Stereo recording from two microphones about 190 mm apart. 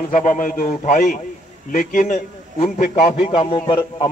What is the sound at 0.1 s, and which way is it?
A man's voice, 45° left (ahead or behind).